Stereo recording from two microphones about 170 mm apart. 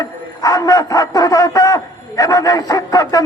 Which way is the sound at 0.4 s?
20° left (ahead or behind).